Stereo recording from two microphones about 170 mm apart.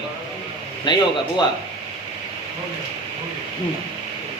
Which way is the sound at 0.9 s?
25° left (ahead or behind).